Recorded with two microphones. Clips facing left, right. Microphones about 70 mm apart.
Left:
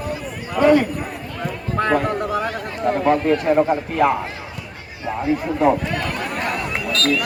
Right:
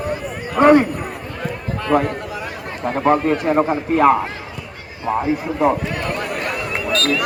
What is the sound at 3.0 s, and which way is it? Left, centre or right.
Speech, right.